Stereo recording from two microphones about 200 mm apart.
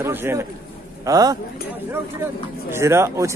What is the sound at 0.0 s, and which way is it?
A man's voice, 10° right (ahead or behind).